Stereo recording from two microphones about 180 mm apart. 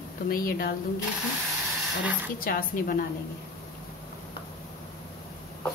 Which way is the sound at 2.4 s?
55° left (ahead or behind).